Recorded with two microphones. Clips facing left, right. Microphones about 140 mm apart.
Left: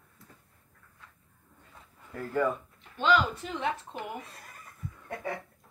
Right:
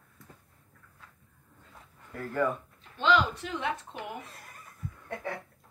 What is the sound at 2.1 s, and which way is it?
Speech, 10° left (ahead or behind).